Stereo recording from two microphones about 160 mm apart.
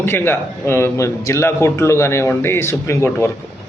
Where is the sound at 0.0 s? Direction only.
15° left (ahead or behind).